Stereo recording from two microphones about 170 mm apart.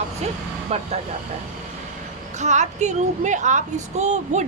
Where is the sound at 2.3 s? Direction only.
45° right (ahead or behind).